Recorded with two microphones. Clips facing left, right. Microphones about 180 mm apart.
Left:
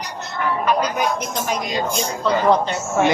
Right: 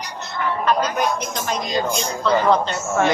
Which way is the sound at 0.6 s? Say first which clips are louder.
Right 1 dB; 10° left (ahead or behind).